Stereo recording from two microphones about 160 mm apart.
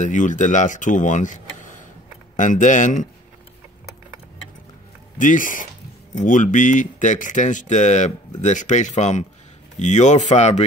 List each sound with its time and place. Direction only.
0.0 s speech: 50° left (ahead or behind)
5.1 s speech: 55° left (ahead or behind)